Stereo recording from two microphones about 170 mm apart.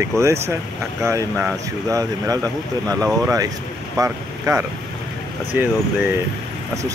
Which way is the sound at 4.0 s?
15° right (ahead or behind).